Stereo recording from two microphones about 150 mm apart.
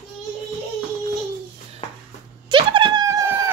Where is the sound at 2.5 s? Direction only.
35° right (ahead or behind).